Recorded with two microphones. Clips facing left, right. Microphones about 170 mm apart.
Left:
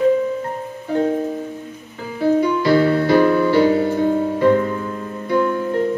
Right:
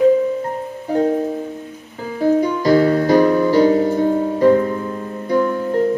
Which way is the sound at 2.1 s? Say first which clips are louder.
Even; 40° right (ahead or behind).